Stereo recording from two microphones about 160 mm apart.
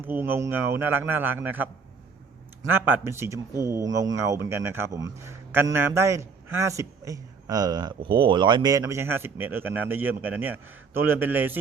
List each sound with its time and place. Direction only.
0.0 s speech: 10° right (ahead or behind)